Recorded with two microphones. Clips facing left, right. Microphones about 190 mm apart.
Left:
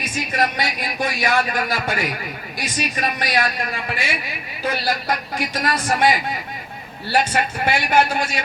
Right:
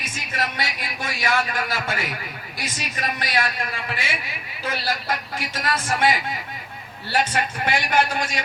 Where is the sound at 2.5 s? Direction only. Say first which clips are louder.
Left 6 dB; 15° left (ahead or behind).